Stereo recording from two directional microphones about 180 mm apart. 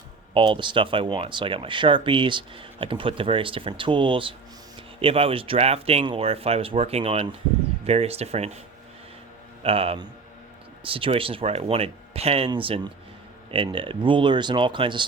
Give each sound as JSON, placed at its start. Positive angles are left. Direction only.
{"t": 0.3, "sound": "speech", "side_deg": -30}
{"t": 9.6, "sound": "speech", "side_deg": -30}